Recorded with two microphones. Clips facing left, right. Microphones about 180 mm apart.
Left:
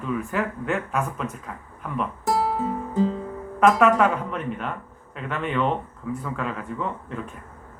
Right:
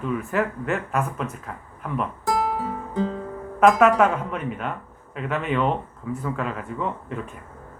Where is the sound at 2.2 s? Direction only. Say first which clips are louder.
Left 2 dB; 25° left (ahead or behind).